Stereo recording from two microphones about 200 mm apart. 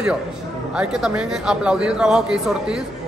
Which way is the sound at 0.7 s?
5° right (ahead or behind).